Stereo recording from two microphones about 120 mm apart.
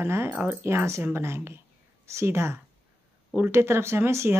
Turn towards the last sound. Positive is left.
turn(degrees=-20)  # may be behind; listen again after turning